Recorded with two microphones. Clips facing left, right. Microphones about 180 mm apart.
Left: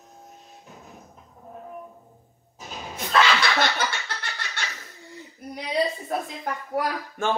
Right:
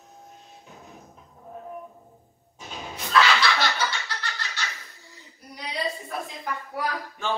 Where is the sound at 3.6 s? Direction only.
50° left (ahead or behind).